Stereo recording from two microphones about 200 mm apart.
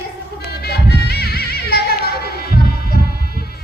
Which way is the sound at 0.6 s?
55° left (ahead or behind).